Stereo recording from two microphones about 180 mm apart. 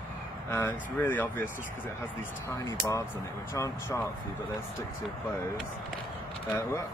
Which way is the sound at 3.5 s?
15° left (ahead or behind).